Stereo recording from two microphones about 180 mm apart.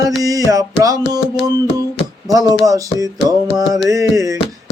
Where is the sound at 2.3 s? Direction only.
20° right (ahead or behind).